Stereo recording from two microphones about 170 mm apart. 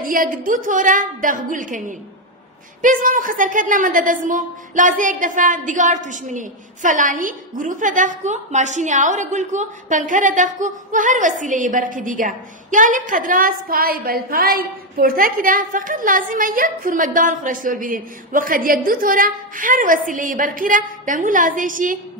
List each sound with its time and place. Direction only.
0.0 s a woman's voice: 55° right (ahead or behind)